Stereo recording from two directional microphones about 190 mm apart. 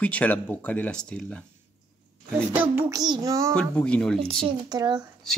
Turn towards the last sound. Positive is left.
turn(degrees=-20)  # may be behind; listen again after turning